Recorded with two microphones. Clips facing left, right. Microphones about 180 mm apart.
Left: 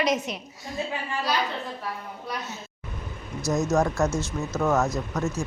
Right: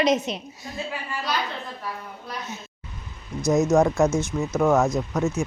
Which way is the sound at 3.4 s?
Centre (ahead or behind).